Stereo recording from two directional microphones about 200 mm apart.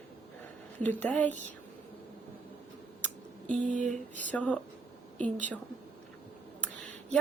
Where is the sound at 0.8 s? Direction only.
5° left (ahead or behind).